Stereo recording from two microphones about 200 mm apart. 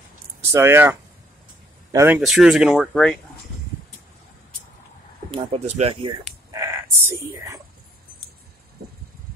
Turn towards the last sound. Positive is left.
turn(degrees=-15)  # may be behind; listen again after turning